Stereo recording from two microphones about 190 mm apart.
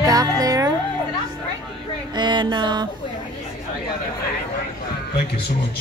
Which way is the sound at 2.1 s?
25° right (ahead or behind).